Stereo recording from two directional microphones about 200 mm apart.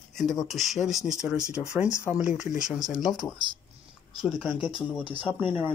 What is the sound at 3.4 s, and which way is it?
Speech, 25° right (ahead or behind).